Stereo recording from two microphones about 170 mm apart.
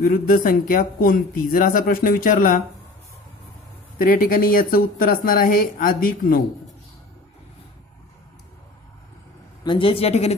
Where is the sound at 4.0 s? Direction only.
55° left (ahead or behind).